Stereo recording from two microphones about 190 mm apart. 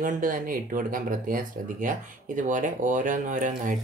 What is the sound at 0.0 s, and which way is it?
Speech, 45° right (ahead or behind).